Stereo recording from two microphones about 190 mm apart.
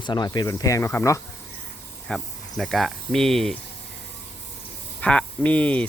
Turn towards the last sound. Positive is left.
turn(degrees=5)  # may be behind; listen again after turning